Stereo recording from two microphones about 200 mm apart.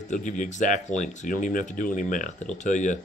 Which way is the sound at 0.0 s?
40° left (ahead or behind).